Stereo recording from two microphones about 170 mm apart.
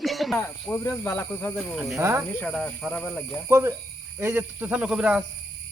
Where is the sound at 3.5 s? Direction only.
15° right (ahead or behind).